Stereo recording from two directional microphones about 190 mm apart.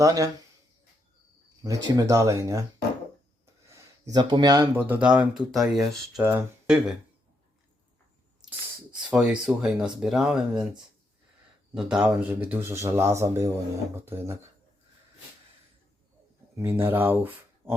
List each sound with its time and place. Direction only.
0.0 s speech: 20° right (ahead or behind)
1.6 s speech: 15° right (ahead or behind)
3.8 s speech: 20° right (ahead or behind); by 6.0 s centre (ahead or behind)
6.1 s speech: 15° right (ahead or behind)
9.0 s speech: 5° right (ahead or behind)
16.6 s speech: 10° right (ahead or behind)